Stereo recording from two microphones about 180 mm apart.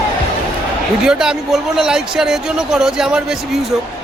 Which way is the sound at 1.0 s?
5° right (ahead or behind).